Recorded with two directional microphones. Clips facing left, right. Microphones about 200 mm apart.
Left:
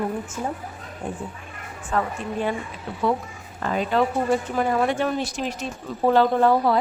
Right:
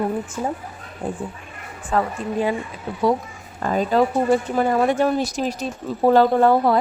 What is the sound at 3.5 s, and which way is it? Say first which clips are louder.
A woman's voice: right 3 dB; 40° right (ahead or behind).